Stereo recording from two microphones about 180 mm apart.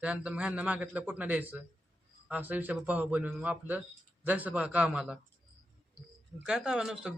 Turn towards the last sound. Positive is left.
turn(degrees=-5)  # may be behind; listen again after turning